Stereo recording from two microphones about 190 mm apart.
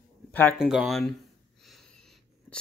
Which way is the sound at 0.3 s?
10° left (ahead or behind).